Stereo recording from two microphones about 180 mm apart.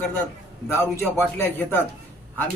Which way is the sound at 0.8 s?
15° left (ahead or behind).